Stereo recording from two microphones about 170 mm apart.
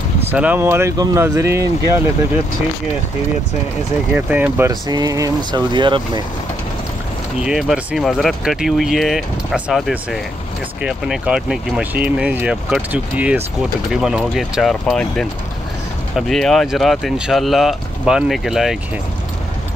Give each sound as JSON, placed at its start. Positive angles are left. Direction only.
{"t": 0.3, "sound": "speech", "side_deg": -10}
{"t": 4.1, "sound": "speech", "side_deg": -10}
{"t": 7.3, "sound": "speech", "side_deg": -5}